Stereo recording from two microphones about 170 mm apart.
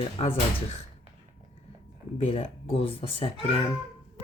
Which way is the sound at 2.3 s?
35° left (ahead or behind).